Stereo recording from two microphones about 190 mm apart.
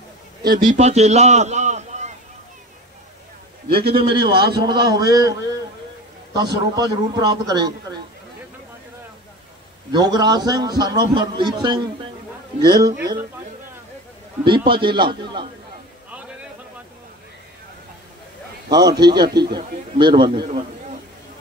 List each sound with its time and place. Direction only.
0.6 s a man's voice: 30° right (ahead or behind)
3.7 s a man's voice: 55° right (ahead or behind)
4.0 s a man's voice: 25° right (ahead or behind)
9.9 s a man's voice: 20° right (ahead or behind)
14.7 s a man's voice: 25° right (ahead or behind)
18.7 s a man's voice: 20° right (ahead or behind)